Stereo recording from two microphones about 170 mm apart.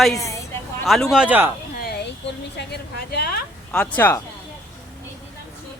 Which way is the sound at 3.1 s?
65° left (ahead or behind).